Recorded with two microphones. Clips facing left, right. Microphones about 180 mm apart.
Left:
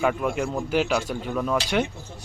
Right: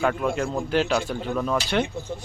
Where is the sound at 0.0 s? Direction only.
10° left (ahead or behind).